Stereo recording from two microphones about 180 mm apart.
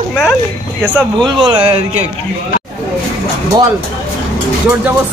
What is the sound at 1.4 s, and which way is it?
Speech, 30° right (ahead or behind).